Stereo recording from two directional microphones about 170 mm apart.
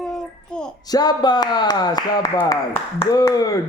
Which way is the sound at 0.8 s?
20° left (ahead or behind).